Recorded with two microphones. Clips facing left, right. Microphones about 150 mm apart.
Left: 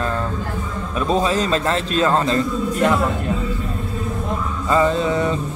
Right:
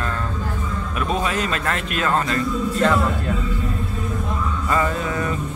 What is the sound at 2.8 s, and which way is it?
Speech, 15° left (ahead or behind).